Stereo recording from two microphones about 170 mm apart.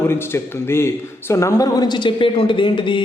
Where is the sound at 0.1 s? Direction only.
15° left (ahead or behind).